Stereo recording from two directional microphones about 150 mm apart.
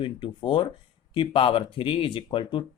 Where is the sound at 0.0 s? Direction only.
30° left (ahead or behind).